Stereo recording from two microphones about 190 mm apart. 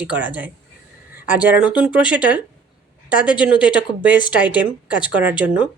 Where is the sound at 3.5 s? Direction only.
5° right (ahead or behind).